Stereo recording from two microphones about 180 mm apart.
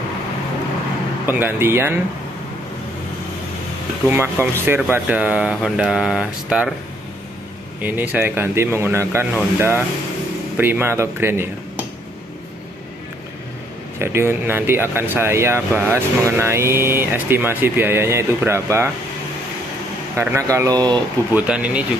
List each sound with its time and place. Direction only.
1.2 s speech: 10° right (ahead or behind)
4.1 s speech: 15° right (ahead or behind)
7.8 s speech: 10° right (ahead or behind)
13.9 s speech: 15° right (ahead or behind)
20.2 s speech: 15° right (ahead or behind)
21.4 s speech: 5° right (ahead or behind)